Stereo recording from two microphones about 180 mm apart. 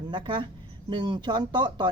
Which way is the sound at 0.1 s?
25° right (ahead or behind).